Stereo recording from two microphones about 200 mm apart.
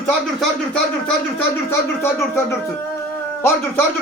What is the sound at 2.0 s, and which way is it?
Speech, 15° left (ahead or behind).